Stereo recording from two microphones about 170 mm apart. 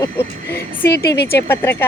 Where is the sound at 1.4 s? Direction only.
15° left (ahead or behind).